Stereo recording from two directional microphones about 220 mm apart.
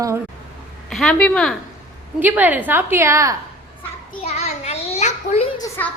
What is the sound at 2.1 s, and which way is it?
A woman's voice, 10° right (ahead or behind).